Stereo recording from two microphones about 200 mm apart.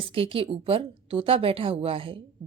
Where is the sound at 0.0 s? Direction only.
25° right (ahead or behind).